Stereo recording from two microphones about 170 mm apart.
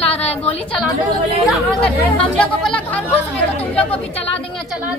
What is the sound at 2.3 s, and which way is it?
Chatter, 5° left (ahead or behind).